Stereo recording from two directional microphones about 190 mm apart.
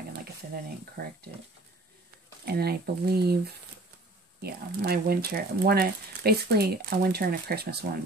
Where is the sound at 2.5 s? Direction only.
55° right (ahead or behind).